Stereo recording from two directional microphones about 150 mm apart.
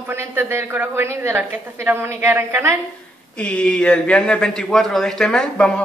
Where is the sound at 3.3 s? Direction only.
5° left (ahead or behind).